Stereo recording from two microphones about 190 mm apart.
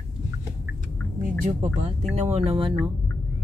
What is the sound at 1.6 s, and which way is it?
Speech, 35° right (ahead or behind).